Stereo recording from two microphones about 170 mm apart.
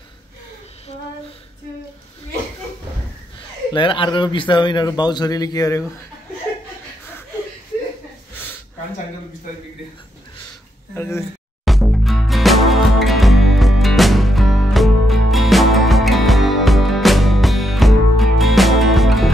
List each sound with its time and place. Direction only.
3.7 s a man's voice: 30° left (ahead or behind)
11.0 s speech: 15° left (ahead or behind)
11.6 s music: centre (ahead or behind)